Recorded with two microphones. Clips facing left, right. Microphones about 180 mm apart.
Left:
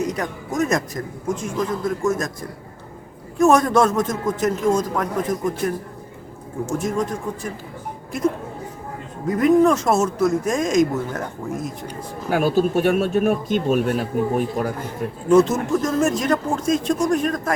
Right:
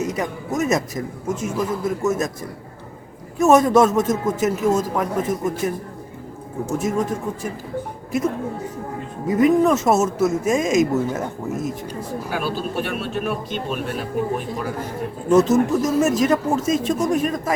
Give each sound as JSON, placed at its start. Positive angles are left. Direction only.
{"t": 0.0, "sound": "speech", "side_deg": -5}
{"t": 3.3, "sound": "speech", "side_deg": -5}
{"t": 9.2, "sound": "speech", "side_deg": 0}
{"t": 12.3, "sound": "speech", "side_deg": 45}
{"t": 15.3, "sound": "speech", "side_deg": 0}